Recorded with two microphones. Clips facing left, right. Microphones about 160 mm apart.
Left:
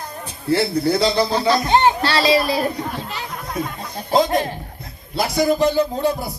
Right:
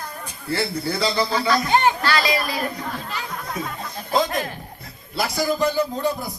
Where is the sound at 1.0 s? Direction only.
30° left (ahead or behind).